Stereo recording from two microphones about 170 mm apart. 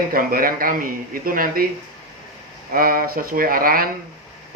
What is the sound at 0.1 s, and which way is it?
Speech, 60° right (ahead or behind).